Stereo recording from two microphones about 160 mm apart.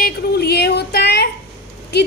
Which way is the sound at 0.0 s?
80° left.